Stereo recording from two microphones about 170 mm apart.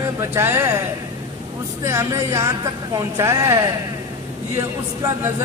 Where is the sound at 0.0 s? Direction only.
15° right (ahead or behind).